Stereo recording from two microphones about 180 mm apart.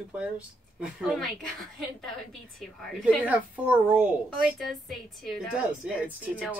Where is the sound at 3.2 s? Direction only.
10° right (ahead or behind).